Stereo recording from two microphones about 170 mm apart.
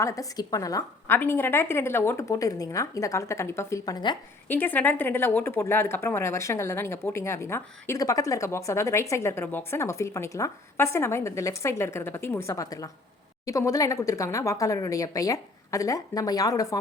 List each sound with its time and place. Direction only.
0.0 s speech: 20° left (ahead or behind)
4.4 s speech: 10° left (ahead or behind)